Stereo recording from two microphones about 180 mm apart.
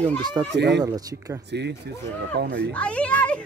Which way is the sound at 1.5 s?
70° right (ahead or behind).